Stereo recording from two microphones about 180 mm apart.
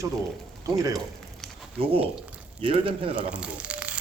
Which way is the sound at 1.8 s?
30° right (ahead or behind).